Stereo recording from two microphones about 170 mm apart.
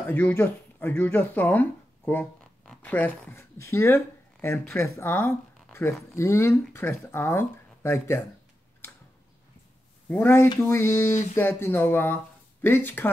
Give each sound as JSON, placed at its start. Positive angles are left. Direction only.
{"t": 0.0, "sound": "speech", "side_deg": 10}
{"t": 10.0, "sound": "speech", "side_deg": 10}